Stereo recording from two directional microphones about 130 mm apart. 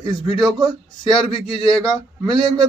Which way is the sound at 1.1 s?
45° left (ahead or behind).